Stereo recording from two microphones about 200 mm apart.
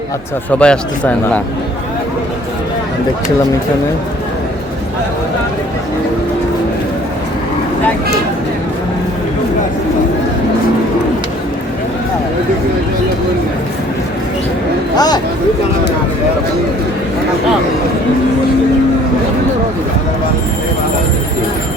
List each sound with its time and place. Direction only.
0.6 s a man's voice: 5° left (ahead or behind)
14.9 s speech: 20° left (ahead or behind)